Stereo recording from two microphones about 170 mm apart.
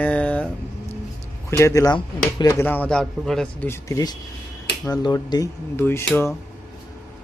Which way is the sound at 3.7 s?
20° left (ahead or behind).